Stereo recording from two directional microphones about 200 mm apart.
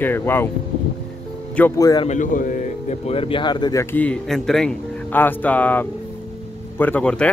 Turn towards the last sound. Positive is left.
turn(degrees=5)  # may be behind; listen again after turning